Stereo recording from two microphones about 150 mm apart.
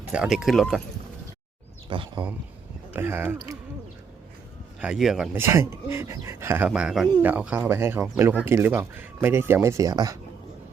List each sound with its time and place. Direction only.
0.0 s speech: 5° right (ahead or behind)
1.9 s speech: 35° right (ahead or behind)
2.9 s speech: 15° right (ahead or behind)
4.8 s speech: 5° right (ahead or behind)
5.3 s speech: 15° right (ahead or behind)
6.7 s speech: 5° right (ahead or behind); by 10.2 s 25° right (ahead or behind)